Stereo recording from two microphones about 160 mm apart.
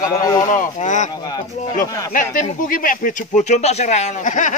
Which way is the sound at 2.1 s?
55° left (ahead or behind).